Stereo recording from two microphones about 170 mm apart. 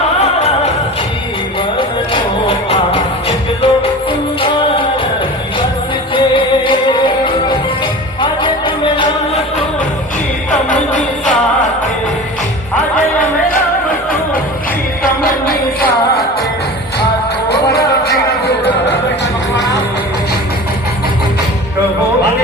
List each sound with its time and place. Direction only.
2.6 s music: 35° left (ahead or behind)
6.1 s music: 30° left (ahead or behind)
17.5 s music: 70° left (ahead or behind)
18.6 s music: 85° left